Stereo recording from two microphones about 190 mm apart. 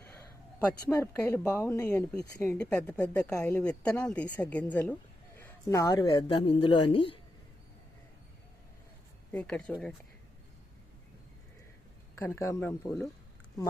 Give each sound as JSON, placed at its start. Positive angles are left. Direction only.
{"t": 0.9, "sound": "a woman's voice", "side_deg": 15}
{"t": 9.3, "sound": "a woman's voice", "side_deg": 5}
{"t": 12.2, "sound": "a woman's voice", "side_deg": 10}